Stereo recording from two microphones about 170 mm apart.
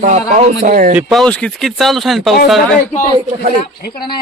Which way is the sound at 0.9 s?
Centre (ahead or behind).